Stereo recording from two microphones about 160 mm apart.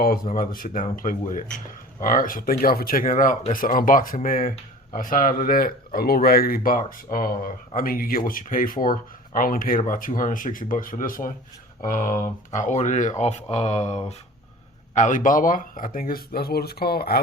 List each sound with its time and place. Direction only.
0.3 s speech: 65° left (ahead or behind)